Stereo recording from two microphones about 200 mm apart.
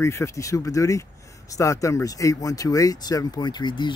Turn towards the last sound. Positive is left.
turn(degrees=20)  # may be behind; listen again after turning